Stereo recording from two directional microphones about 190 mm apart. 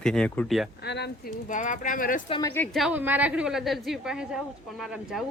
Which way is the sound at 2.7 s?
5° right (ahead or behind).